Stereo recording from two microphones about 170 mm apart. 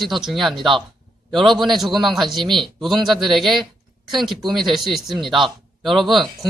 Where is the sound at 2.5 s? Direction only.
Centre (ahead or behind).